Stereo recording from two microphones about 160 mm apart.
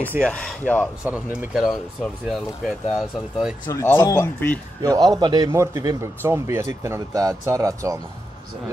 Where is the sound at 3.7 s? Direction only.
15° left (ahead or behind).